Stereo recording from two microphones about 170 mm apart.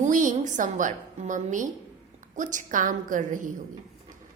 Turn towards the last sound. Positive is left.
turn(degrees=-50)  # may be behind; listen again after turning